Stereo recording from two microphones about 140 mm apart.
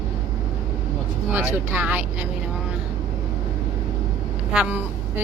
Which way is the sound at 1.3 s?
10° right (ahead or behind).